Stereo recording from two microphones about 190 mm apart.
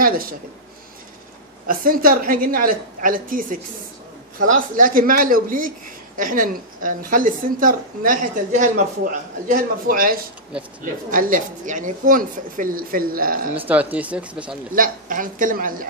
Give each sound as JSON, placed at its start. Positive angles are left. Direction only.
{"t": 0.0, "sound": "a sound", "side_deg": -50}
{"t": 1.7, "sound": "a woman's voice", "side_deg": -50}
{"t": 13.7, "sound": "speech", "side_deg": -10}
{"t": 14.8, "sound": "a woman's voice", "side_deg": -45}